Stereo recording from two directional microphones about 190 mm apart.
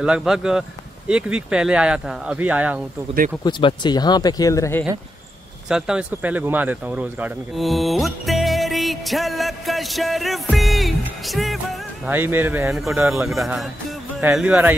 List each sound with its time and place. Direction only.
0.0 s speech: 5° right (ahead or behind)
3.4 s speech: 25° left (ahead or behind)
5.7 s speech: 5° right (ahead or behind)
12.1 s speech: 10° right (ahead or behind)